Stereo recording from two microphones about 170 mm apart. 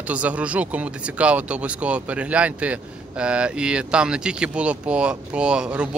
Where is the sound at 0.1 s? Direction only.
10° right (ahead or behind).